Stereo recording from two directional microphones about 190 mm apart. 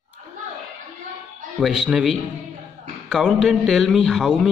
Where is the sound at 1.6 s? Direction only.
Centre (ahead or behind).